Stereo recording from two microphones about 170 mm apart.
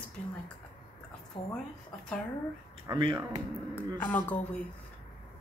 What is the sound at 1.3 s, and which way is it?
Speech, 25° left (ahead or behind).